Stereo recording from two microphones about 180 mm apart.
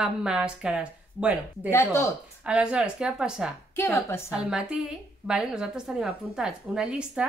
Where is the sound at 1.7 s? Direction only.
15° left (ahead or behind).